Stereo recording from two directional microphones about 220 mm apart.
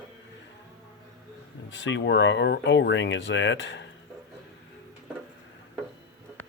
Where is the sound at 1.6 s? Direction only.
55° left (ahead or behind).